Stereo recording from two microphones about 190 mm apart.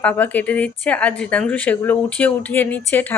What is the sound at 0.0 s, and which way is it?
Speech, 10° left (ahead or behind).